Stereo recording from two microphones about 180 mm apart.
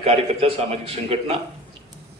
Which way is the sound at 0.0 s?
35° right (ahead or behind).